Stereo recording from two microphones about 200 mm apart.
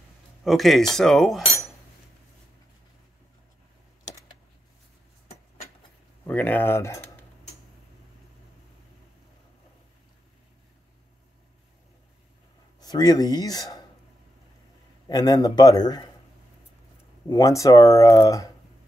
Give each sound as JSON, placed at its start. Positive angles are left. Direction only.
{"t": 0.4, "sound": "speech", "side_deg": 0}
{"t": 6.2, "sound": "speech", "side_deg": 10}
{"t": 12.8, "sound": "a man's voice", "side_deg": 20}
{"t": 15.0, "sound": "a man's voice", "side_deg": 20}
{"t": 17.3, "sound": "speech", "side_deg": 15}